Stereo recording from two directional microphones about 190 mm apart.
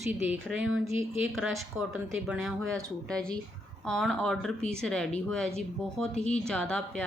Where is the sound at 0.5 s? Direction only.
75° right (ahead or behind).